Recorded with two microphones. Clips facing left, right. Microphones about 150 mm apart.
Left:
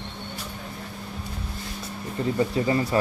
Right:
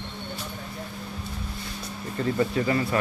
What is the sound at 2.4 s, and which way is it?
Speech, 25° left (ahead or behind).